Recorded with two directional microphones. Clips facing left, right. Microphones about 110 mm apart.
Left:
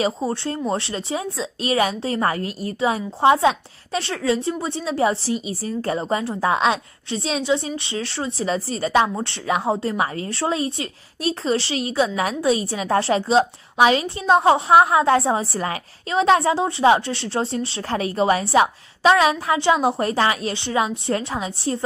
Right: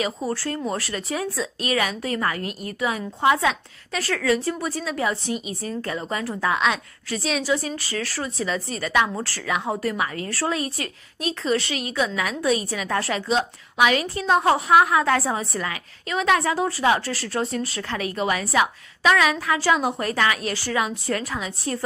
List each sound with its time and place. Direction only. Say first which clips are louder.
0.0 s a woman's voice: left 3 dB; 25° left (ahead or behind)